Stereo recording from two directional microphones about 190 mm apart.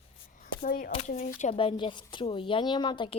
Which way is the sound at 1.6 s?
25° left (ahead or behind).